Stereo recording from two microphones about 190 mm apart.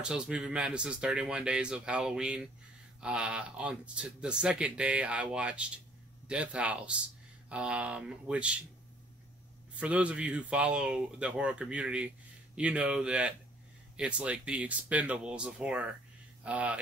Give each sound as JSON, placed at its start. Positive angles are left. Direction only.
{"t": 0.0, "sound": "speech", "side_deg": -5}
{"t": 9.8, "sound": "speech", "side_deg": -5}